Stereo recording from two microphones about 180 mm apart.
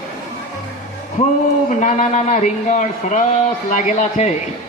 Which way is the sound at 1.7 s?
45° left (ahead or behind).